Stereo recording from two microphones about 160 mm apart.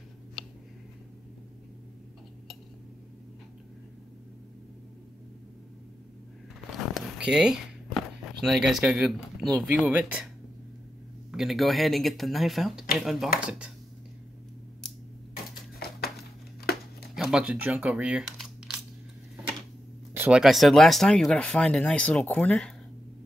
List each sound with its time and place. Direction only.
7.2 s a sound: 5° right (ahead or behind)
8.5 s speech: centre (ahead or behind)
11.3 s speech: centre (ahead or behind)
16.7 s a sound: 80° left
17.1 s speech: 5° right (ahead or behind)
20.2 s speech: 5° right (ahead or behind)